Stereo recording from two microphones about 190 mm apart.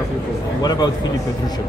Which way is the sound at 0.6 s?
20° left (ahead or behind).